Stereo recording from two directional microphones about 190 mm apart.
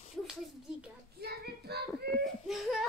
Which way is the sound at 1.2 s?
55° right (ahead or behind).